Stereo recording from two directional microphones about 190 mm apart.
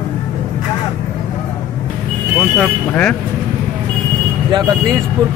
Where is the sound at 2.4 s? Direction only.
5° left (ahead or behind).